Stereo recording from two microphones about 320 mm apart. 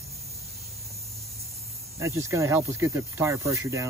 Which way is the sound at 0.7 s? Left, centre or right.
Centre.